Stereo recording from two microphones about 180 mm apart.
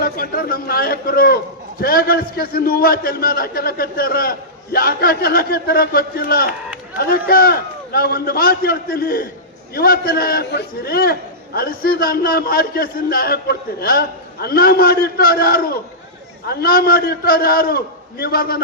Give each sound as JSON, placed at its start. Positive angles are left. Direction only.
{"t": 0.0, "sound": "a man's voice", "side_deg": 55}